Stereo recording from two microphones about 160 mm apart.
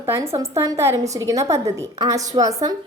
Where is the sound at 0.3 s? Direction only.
20° right (ahead or behind).